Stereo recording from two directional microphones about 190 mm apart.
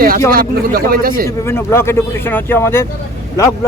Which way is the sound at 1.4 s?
15° left (ahead or behind).